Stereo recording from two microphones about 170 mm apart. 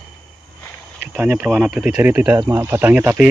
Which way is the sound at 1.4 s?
Centre (ahead or behind).